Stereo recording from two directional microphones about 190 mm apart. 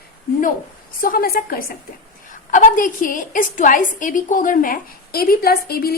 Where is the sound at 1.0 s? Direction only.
50° left (ahead or behind).